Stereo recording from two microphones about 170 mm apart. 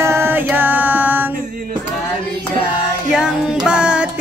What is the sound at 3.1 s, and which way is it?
Music, 5° right (ahead or behind).